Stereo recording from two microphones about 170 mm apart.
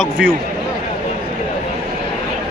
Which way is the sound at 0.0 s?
5° right (ahead or behind).